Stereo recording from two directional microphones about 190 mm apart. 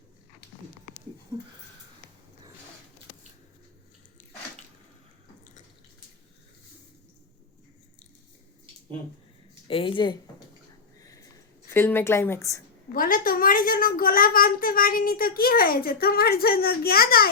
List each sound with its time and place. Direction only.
9.6 s a woman's voice: 30° left (ahead or behind)
11.0 s a sound: 20° left (ahead or behind)
11.7 s a woman's voice: 10° left (ahead or behind)
12.9 s a child's voice: 50° left (ahead or behind)